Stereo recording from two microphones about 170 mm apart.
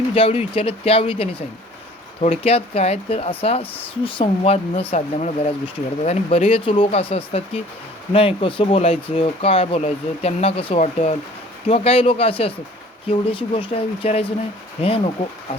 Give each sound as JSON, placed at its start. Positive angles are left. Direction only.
{"t": 0.1, "sound": "speech", "side_deg": 35}